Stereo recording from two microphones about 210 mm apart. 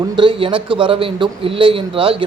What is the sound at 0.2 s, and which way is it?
A man's voice, 25° right (ahead or behind).